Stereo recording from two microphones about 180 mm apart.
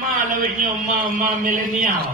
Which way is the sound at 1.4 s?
50° right (ahead or behind).